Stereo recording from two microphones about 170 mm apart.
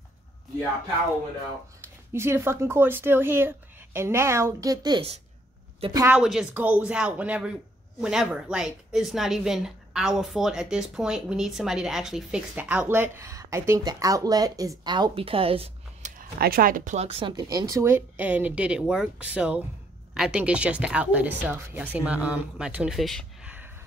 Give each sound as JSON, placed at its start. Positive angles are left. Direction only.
{"t": 2.1, "sound": "speech", "side_deg": -15}
{"t": 16.2, "sound": "speech", "side_deg": -60}